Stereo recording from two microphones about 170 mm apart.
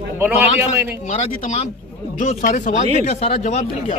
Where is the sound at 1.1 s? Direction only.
40° left (ahead or behind).